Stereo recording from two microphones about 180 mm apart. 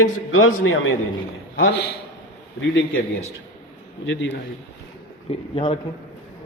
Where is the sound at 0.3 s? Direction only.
90° left.